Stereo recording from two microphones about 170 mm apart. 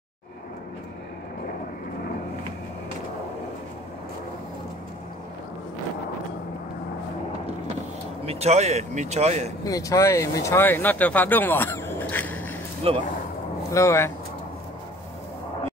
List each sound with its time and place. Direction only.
8.3 s speech: 40° right (ahead or behind)
9.7 s speech: 20° left (ahead or behind)
12.9 s speech: 35° right (ahead or behind)
13.7 s speech: 15° left (ahead or behind)